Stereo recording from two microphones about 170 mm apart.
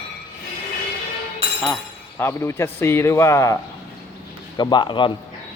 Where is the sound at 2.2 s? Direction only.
15° left (ahead or behind).